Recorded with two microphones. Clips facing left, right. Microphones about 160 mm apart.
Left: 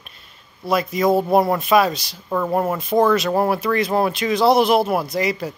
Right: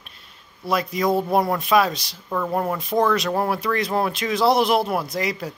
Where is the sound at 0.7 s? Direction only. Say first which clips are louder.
Left 3 dB; centre (ahead or behind).